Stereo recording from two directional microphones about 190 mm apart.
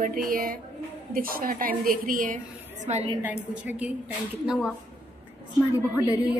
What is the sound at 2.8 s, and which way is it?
Speech, 35° right (ahead or behind).